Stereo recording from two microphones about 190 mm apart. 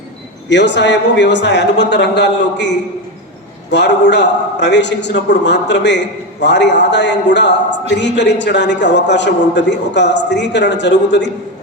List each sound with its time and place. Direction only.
0.4 s a man's voice: 65° left (ahead or behind)